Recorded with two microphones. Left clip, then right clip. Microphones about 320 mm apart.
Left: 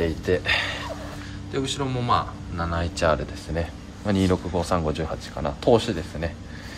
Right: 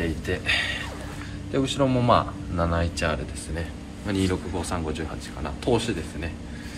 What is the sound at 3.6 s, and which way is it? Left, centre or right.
Speech, left.